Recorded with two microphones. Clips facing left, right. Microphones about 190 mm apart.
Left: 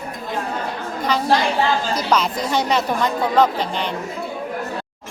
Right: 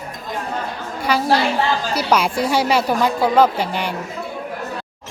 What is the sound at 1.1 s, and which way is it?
A woman's voice, 10° right (ahead or behind).